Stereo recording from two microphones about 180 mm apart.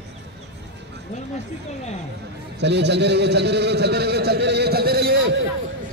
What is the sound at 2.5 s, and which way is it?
A man's voice, 70° right (ahead or behind).